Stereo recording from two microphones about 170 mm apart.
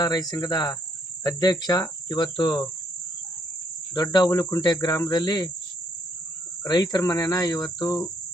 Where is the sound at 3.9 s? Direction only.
25° left (ahead or behind).